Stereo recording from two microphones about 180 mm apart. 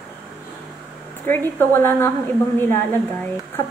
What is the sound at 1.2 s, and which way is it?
A woman's voice, 10° left (ahead or behind).